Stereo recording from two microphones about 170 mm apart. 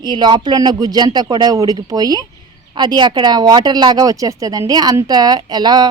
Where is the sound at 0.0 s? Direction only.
25° right (ahead or behind).